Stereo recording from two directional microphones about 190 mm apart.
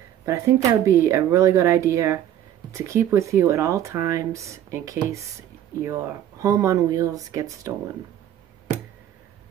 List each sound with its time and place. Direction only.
0.2 s speech: 15° right (ahead or behind)